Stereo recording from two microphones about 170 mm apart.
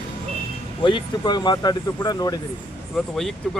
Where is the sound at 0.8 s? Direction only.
25° left (ahead or behind).